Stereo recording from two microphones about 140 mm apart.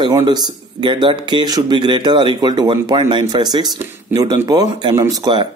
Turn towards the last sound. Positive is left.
turn(degrees=-30)  # may be behind; listen again after turning